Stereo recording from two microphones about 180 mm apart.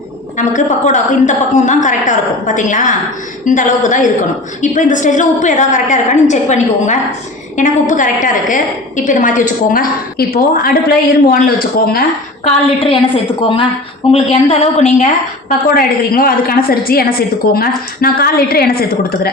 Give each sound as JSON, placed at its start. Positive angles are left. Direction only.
{"t": 0.3, "sound": "a woman's voice", "side_deg": 45}
{"t": 12.5, "sound": "a woman's voice", "side_deg": 30}
{"t": 14.1, "sound": "a woman's voice", "side_deg": 35}
{"t": 15.4, "sound": "a woman's voice", "side_deg": 55}